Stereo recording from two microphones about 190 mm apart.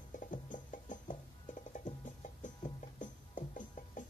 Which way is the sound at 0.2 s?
45° left (ahead or behind).